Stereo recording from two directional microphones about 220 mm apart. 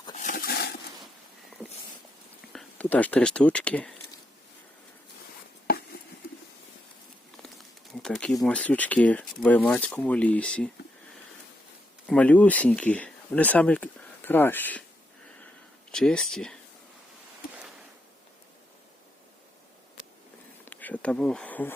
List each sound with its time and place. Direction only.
0.1 s a sound: 35° left (ahead or behind)
2.5 s speech: 5° left (ahead or behind)
5.6 s a sound: 45° left (ahead or behind)
8.0 s speech: 5° left (ahead or behind)
12.0 s speech: 5° left (ahead or behind)
15.9 s speech: 5° left (ahead or behind)
20.7 s insect: 5° left (ahead or behind)